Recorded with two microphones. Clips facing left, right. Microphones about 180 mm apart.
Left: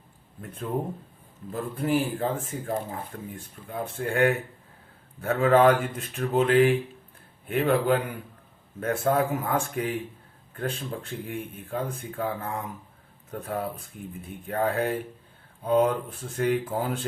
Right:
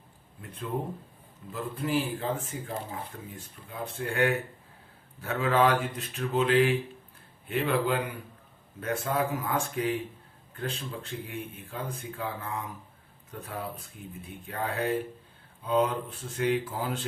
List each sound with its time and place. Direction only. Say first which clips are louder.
1.5 s speech: left 4 dB; 50° left (ahead or behind)